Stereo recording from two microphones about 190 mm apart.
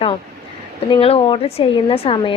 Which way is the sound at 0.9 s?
30° left (ahead or behind).